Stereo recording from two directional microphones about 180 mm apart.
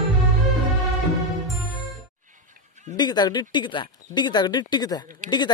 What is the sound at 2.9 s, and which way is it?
Speech, 25° left (ahead or behind).